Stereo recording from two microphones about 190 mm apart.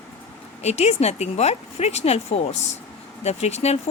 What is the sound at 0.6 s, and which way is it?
Speech, 35° left (ahead or behind).